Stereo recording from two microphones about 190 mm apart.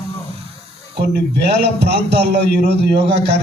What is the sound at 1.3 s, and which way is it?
A man's voice, 60° right (ahead or behind).